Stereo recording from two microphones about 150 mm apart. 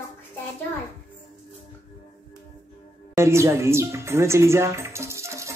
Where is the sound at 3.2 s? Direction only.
20° right (ahead or behind).